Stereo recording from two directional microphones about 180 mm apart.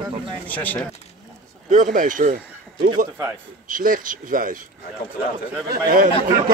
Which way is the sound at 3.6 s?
50° right (ahead or behind).